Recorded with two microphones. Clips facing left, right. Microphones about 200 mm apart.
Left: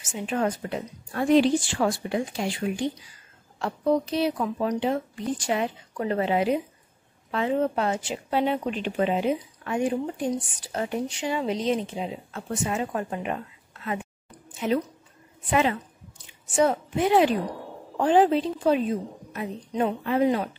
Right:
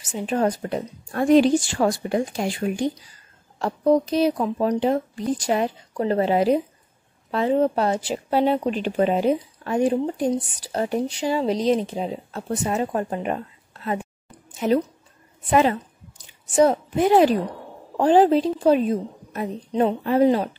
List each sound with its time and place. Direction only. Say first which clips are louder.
0.0 s a woman's voice: right 4 dB; 35° right (ahead or behind)
14.5 s a sound: right 5 dB; 40° right (ahead or behind)
15.5 s a woman's voice: right 5 dB; 40° right (ahead or behind)